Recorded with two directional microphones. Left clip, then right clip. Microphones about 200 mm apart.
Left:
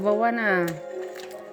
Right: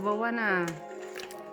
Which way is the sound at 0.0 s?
20° left (ahead or behind).